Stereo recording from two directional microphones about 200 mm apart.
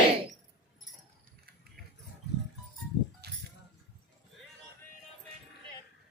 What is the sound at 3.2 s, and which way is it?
Music, 55° right (ahead or behind).